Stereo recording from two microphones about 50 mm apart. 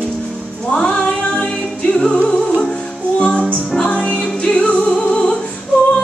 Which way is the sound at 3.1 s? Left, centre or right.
Left.